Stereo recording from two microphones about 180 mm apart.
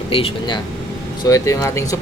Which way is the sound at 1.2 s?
15° left (ahead or behind).